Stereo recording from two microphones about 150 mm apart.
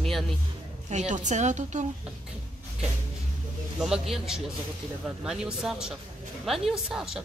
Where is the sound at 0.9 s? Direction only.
50° right (ahead or behind).